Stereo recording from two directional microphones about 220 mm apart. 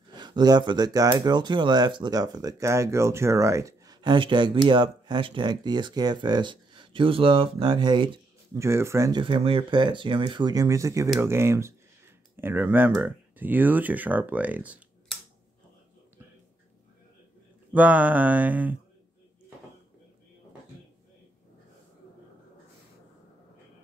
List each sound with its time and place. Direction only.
0.1 s speech: 20° right (ahead or behind)
9.2 s speech: 25° right (ahead or behind); by 15.1 s 5° right (ahead or behind)
17.7 s mantra: 5° right (ahead or behind)